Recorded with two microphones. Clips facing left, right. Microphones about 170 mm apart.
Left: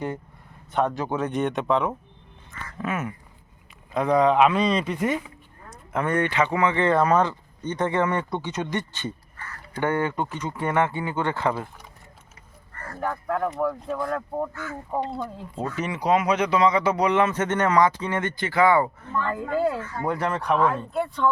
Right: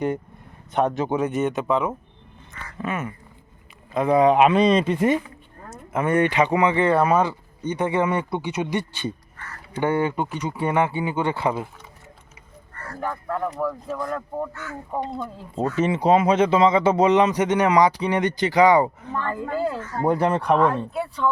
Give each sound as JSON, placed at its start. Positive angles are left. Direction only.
{"t": 0.7, "sound": "speech", "side_deg": -20}
{"t": 5.9, "sound": "speech", "side_deg": -5}
{"t": 13.0, "sound": "speech", "side_deg": 0}
{"t": 15.5, "sound": "speech", "side_deg": -40}
{"t": 15.8, "sound": "speech", "side_deg": -25}
{"t": 19.3, "sound": "speech", "side_deg": 0}
{"t": 20.0, "sound": "speech", "side_deg": -30}
{"t": 20.6, "sound": "speech", "side_deg": 0}